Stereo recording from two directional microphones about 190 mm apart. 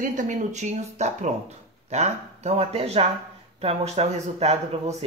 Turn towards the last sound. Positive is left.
turn(degrees=-35)  # may be behind; listen again after turning